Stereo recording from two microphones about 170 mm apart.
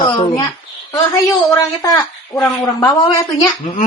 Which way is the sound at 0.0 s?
30° left (ahead or behind).